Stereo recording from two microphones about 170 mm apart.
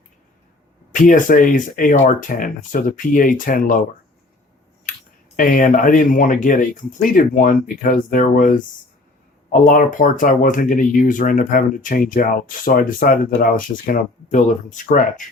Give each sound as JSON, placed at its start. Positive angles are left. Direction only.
{"t": 0.9, "sound": "speech", "side_deg": 50}
{"t": 4.9, "sound": "a sound", "side_deg": 55}
{"t": 5.4, "sound": "speech", "side_deg": 55}